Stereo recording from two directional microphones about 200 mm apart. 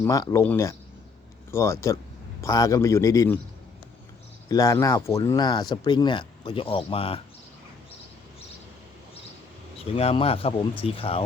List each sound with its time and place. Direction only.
0.0 s a man's voice: 15° left (ahead or behind)
4.4 s speech: 15° left (ahead or behind)
9.7 s speech: 30° left (ahead or behind)